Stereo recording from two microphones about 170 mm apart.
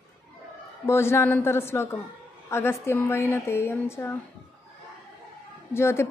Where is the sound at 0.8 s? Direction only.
15° left (ahead or behind).